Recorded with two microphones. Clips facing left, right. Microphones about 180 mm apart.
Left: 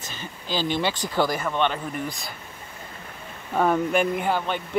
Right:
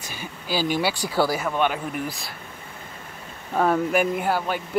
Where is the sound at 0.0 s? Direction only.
10° right (ahead or behind).